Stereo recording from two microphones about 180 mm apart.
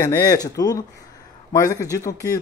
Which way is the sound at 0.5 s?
20° left (ahead or behind).